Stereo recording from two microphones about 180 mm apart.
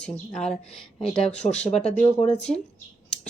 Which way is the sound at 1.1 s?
35° left (ahead or behind).